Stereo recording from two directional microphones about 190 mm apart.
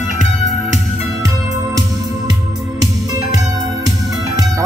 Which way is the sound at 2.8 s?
20° right (ahead or behind).